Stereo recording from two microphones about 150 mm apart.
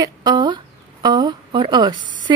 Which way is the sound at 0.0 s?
25° right (ahead or behind).